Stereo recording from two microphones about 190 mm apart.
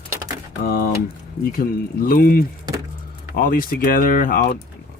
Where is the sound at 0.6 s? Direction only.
50° left (ahead or behind).